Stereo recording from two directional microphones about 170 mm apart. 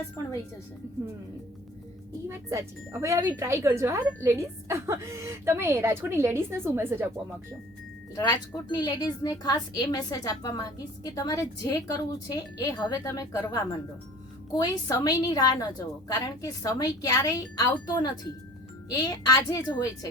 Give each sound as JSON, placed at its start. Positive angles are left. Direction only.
{"t": 2.2, "sound": "a woman's voice", "side_deg": -15}
{"t": 8.1, "sound": "a woman's voice", "side_deg": 20}